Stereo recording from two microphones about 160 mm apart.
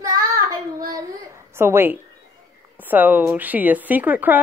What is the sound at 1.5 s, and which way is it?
Speech, 15° right (ahead or behind).